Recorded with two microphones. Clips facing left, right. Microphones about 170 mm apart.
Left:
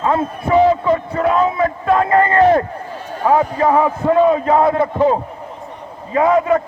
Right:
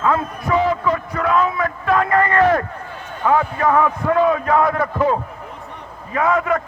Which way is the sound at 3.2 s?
30° left (ahead or behind).